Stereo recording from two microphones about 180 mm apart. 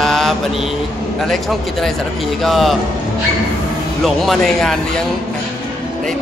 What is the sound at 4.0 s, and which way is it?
Speech, centre (ahead or behind).